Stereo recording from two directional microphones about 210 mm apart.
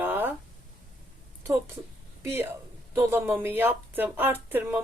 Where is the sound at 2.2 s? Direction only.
10° right (ahead or behind).